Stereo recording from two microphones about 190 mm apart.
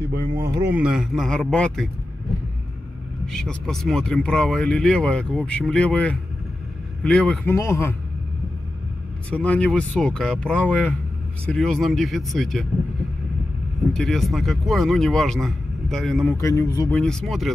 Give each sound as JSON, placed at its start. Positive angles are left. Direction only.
{"t": 0.4, "sound": "speech", "side_deg": -15}
{"t": 3.3, "sound": "a man's voice", "side_deg": 5}
{"t": 9.3, "sound": "speech", "side_deg": 5}
{"t": 13.9, "sound": "speech", "side_deg": 0}
{"t": 16.3, "sound": "a man's voice", "side_deg": 15}
{"t": 17.0, "sound": "speech", "side_deg": 0}